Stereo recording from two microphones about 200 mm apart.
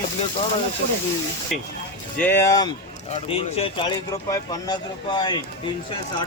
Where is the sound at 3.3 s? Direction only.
25° left (ahead or behind).